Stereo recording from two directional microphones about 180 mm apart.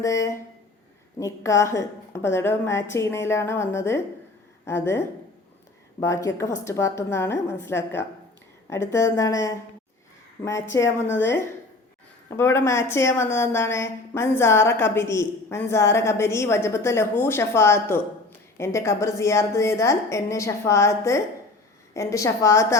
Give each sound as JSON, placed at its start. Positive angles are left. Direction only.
{"t": 0.0, "sound": "a woman's voice", "side_deg": 15}